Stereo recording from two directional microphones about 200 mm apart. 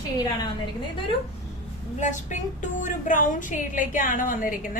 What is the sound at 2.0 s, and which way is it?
A woman's voice, 40° left (ahead or behind).